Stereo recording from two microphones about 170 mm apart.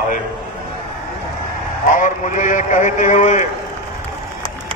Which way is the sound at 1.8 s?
50° left (ahead or behind).